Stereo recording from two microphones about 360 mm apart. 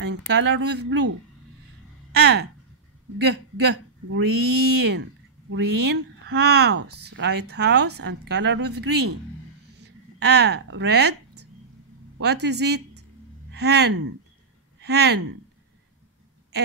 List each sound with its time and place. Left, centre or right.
0.0 s speech: right
2.1 s speech: right
10.1 s a woman's voice: right